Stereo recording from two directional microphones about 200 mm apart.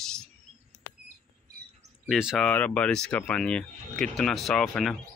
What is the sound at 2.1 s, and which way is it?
Speech, centre (ahead or behind).